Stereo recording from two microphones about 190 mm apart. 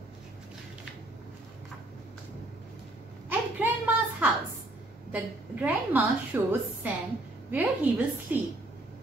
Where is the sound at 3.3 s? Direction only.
10° right (ahead or behind).